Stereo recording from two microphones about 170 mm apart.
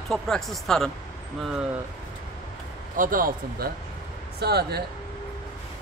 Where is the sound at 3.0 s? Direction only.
55° right (ahead or behind).